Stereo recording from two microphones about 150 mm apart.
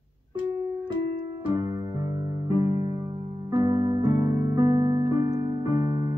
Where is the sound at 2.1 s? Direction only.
25° right (ahead or behind).